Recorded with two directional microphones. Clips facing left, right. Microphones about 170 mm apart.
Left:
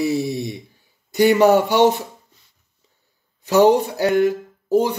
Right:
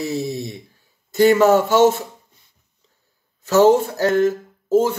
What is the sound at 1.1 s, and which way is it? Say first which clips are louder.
Speech: even; 15° left (ahead or behind).